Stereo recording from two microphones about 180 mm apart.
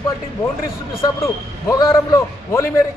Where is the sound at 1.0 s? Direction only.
15° left (ahead or behind).